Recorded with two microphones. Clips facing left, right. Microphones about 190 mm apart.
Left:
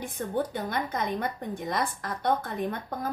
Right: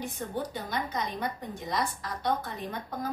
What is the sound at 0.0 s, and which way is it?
A woman's voice, 55° left (ahead or behind).